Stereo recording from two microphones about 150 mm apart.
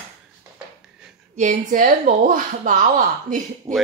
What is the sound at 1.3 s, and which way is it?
Speech, 60° right (ahead or behind).